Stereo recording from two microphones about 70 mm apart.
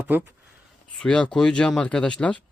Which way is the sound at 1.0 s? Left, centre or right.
Centre.